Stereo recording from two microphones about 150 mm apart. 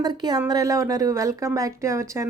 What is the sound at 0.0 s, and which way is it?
A woman's voice, 25° right (ahead or behind).